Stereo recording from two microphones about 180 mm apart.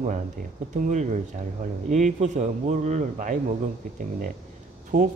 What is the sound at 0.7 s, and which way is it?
A man's voice, 45° right (ahead or behind).